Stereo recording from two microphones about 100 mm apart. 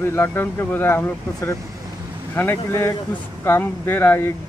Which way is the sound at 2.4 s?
25° left (ahead or behind).